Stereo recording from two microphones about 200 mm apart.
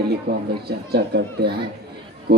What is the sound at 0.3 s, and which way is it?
Speech, 50° right (ahead or behind).